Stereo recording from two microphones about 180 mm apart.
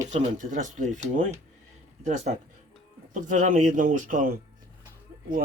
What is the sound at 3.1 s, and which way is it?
Speech, 45° right (ahead or behind).